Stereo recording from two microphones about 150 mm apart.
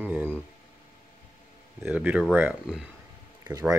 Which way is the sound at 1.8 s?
10° right (ahead or behind).